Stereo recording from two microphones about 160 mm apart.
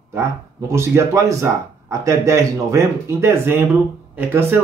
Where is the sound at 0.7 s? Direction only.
20° right (ahead or behind).